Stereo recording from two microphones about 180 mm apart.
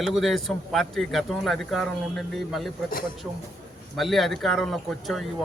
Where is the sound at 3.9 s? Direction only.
Centre (ahead or behind).